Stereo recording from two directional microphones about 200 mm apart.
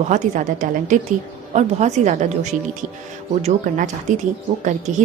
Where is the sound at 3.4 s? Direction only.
40° right (ahead or behind).